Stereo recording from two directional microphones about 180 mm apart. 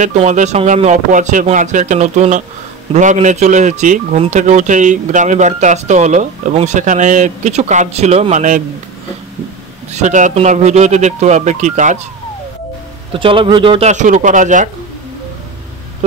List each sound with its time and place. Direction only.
0.0 s speech: 40° right (ahead or behind)
9.9 s speech: 40° right (ahead or behind)
13.1 s speech: 30° right (ahead or behind)